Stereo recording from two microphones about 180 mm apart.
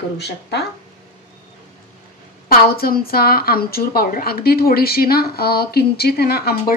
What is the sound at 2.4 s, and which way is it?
A woman's voice, 55° left (ahead or behind).